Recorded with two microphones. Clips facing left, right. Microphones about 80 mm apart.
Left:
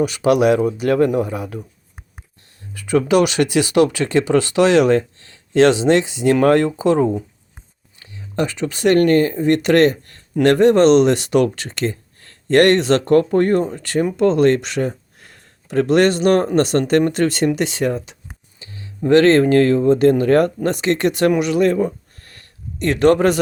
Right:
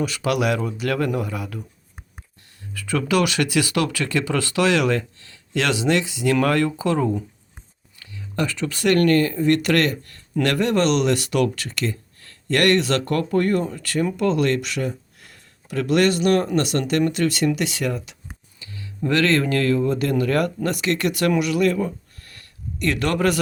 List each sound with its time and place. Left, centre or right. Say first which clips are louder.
0.0 s speech: left 7 dB; left
2.7 s speech: left 6 dB; left